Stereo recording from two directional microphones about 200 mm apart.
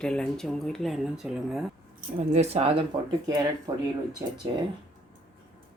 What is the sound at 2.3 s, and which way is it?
Speech, 35° right (ahead or behind).